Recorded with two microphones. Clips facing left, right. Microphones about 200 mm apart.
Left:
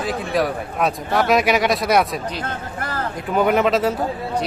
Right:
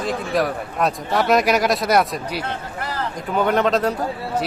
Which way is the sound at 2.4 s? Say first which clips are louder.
Even; 50° left (ahead or behind).